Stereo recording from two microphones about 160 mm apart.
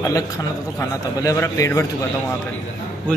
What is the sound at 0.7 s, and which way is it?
A man's voice, 20° left (ahead or behind).